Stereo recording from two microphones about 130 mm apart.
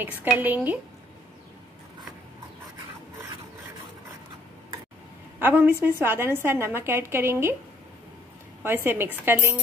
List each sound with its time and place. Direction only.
0.0 s a woman's voice: 15° right (ahead or behind)
5.4 s a woman's voice: 15° right (ahead or behind)
8.6 s a woman's voice: 15° right (ahead or behind)